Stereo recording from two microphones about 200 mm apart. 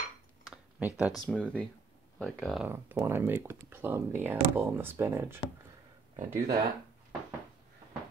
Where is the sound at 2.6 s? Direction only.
10° right (ahead or behind).